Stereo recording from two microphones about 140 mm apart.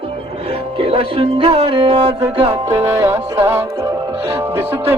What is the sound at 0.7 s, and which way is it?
Music, 40° right (ahead or behind).